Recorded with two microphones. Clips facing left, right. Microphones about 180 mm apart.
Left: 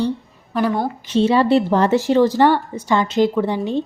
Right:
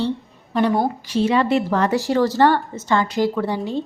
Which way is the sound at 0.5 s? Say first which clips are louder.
Right 1 dB; centre (ahead or behind).